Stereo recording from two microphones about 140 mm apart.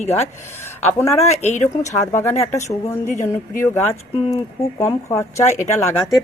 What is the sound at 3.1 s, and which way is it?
Speech, 55° left (ahead or behind).